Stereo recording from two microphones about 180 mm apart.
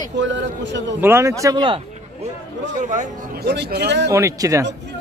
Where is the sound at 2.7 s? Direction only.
45° right (ahead or behind).